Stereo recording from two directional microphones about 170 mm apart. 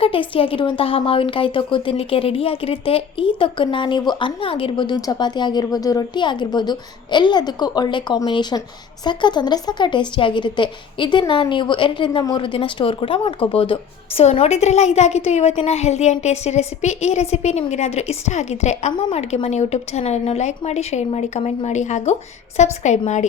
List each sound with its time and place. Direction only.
0.0 s a woman's voice: 30° left (ahead or behind)
18.9 s speech: 25° left (ahead or behind)
19.3 s a woman's voice: 40° left (ahead or behind)